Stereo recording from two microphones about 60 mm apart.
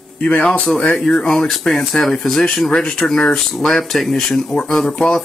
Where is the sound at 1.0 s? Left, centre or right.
Centre.